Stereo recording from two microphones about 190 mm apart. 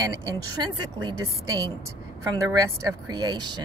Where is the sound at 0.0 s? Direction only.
20° right (ahead or behind).